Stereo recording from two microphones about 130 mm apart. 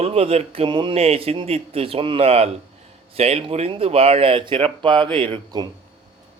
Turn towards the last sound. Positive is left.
turn(degrees=-35)  # may be behind; listen again after turning